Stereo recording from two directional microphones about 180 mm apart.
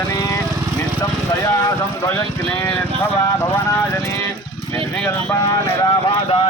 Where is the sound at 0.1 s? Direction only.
20° left (ahead or behind).